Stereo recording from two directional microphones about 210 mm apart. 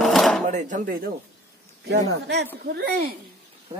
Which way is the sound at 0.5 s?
35° right (ahead or behind).